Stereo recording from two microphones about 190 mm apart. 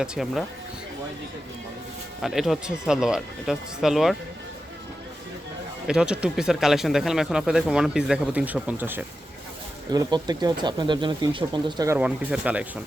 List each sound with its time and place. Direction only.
0.0 s speech: 5° right (ahead or behind)
2.2 s speech: centre (ahead or behind)
5.9 s speech: 5° right (ahead or behind)
9.9 s speech: 20° right (ahead or behind)
11.9 s speech: 5° right (ahead or behind)